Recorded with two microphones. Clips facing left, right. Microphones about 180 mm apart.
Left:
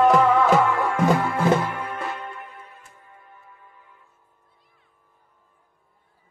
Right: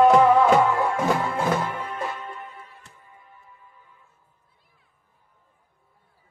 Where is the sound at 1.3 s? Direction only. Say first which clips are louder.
Left 3 dB; 60° left (ahead or behind).